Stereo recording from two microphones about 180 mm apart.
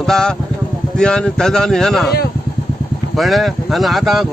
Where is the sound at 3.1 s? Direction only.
Centre (ahead or behind).